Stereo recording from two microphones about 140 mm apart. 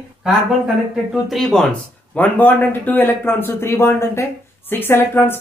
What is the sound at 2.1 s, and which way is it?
Speech, 10° left (ahead or behind).